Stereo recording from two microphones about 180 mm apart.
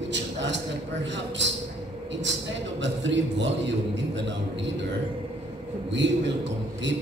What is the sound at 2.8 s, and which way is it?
Speech, 85° right.